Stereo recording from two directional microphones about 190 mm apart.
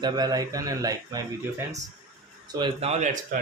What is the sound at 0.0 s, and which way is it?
Speech, 20° right (ahead or behind).